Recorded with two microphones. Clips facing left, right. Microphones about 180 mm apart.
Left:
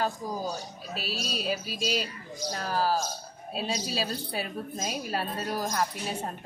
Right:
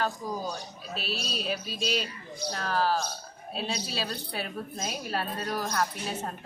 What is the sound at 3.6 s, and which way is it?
Speech, 40° left (ahead or behind).